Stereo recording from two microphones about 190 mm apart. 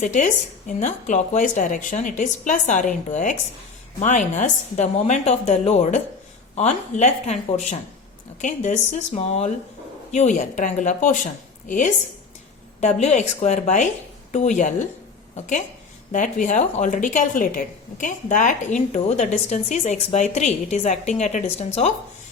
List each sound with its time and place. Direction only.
0.0 s a woman's voice: 40° left (ahead or behind)
16.1 s a woman's voice: 40° left (ahead or behind)